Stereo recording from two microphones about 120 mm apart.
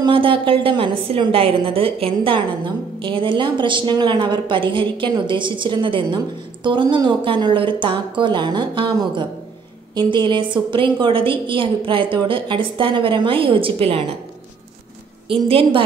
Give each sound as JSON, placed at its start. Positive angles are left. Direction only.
{"t": 0.0, "sound": "a woman's voice", "side_deg": -45}
{"t": 15.2, "sound": "a woman's voice", "side_deg": -50}